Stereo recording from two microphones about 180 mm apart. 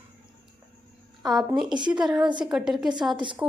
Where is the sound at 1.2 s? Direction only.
Centre (ahead or behind).